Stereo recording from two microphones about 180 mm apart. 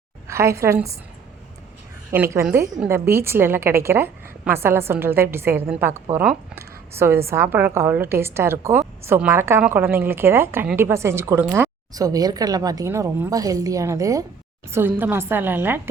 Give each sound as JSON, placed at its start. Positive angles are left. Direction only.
{"t": 0.3, "sound": "a woman's voice", "side_deg": -15}
{"t": 2.0, "sound": "a woman's voice", "side_deg": -15}